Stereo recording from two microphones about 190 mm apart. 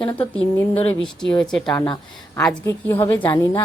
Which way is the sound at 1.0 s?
5° left (ahead or behind).